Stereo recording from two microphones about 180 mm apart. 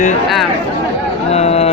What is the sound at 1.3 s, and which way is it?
Speech, 35° left (ahead or behind).